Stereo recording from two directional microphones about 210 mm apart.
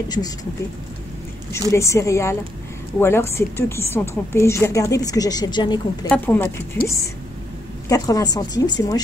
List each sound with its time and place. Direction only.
1.7 s speech: 15° left (ahead or behind)
6.0 s speech: 5° left (ahead or behind)